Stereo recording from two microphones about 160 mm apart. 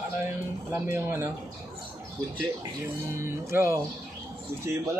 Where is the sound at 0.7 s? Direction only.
15° right (ahead or behind).